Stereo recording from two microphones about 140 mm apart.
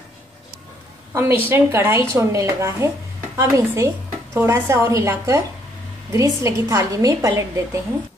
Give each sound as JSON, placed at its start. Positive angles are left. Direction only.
{"t": 1.1, "sound": "a woman's voice", "side_deg": -15}